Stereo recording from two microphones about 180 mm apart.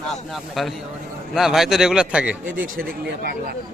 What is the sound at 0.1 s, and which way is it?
A man's voice, centre (ahead or behind).